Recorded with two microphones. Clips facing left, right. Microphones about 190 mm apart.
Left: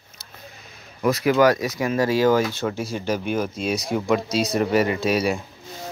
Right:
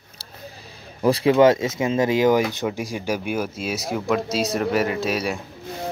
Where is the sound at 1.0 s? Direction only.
30° right (ahead or behind); by 5.4 s centre (ahead or behind).